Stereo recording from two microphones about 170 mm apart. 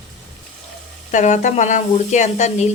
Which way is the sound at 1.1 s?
45° left (ahead or behind).